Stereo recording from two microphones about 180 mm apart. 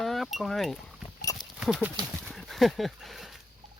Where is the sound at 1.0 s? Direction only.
20° left (ahead or behind).